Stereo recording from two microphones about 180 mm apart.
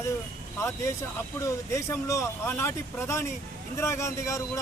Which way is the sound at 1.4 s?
15° left (ahead or behind).